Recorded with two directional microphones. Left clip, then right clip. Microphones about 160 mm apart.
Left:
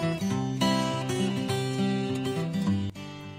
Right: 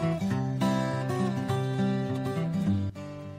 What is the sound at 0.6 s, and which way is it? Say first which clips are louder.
Music: left 3 dB; 25° left (ahead or behind).